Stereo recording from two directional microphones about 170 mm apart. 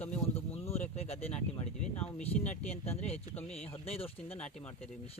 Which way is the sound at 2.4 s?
40° left (ahead or behind).